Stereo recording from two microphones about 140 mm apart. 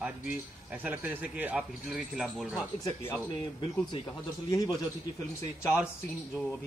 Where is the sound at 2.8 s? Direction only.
15° left (ahead or behind).